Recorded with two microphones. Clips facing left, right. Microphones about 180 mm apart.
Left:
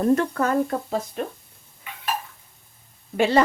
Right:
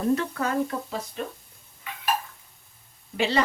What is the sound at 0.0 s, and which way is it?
Speech, 50° left (ahead or behind).